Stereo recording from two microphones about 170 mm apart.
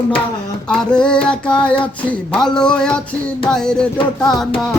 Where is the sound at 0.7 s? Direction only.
5° left (ahead or behind).